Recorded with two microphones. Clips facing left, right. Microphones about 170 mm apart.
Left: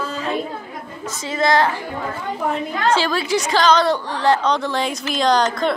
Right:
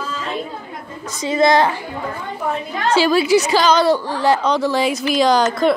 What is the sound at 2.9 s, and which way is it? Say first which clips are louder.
A woman's voice: right 9 dB; 10° right (ahead or behind).